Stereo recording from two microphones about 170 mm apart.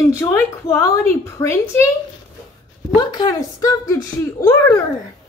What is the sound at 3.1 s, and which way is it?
A child's voice, 20° left (ahead or behind).